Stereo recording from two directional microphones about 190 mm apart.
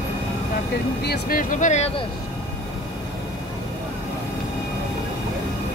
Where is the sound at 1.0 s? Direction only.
55° left (ahead or behind); by 2.0 s 35° left (ahead or behind).